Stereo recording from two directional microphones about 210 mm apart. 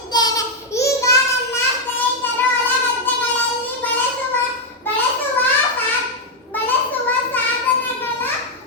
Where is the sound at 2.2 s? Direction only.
10° left (ahead or behind).